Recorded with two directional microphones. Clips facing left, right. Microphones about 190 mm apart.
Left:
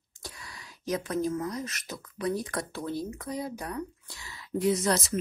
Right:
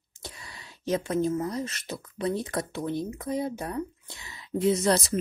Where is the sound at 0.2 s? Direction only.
25° right (ahead or behind).